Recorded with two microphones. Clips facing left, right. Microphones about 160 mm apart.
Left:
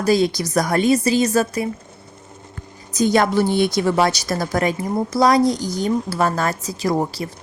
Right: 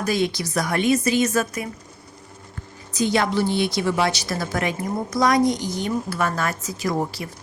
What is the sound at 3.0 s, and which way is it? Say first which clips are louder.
A woman's voice: left 4 dB; 45° left (ahead or behind).